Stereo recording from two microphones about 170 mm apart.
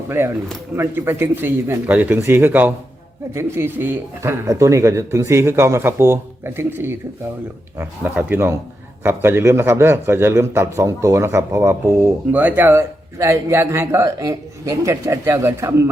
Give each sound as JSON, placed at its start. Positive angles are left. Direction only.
{"t": 0.1, "sound": "a man's voice", "side_deg": -15}